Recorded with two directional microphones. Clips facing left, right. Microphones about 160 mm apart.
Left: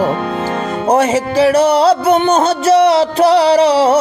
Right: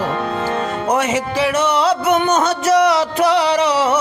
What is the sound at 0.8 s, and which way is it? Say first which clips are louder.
Music: left 7 dB; 30° left (ahead or behind).